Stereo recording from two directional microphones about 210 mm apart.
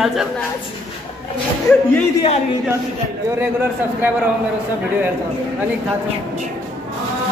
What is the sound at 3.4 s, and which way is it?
Speech, 10° right (ahead or behind).